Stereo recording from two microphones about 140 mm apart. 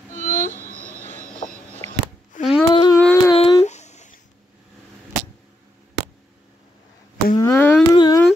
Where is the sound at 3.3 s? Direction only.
50° left (ahead or behind).